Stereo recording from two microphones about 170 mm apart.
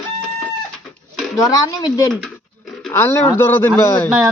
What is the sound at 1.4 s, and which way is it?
Speech, 20° left (ahead or behind).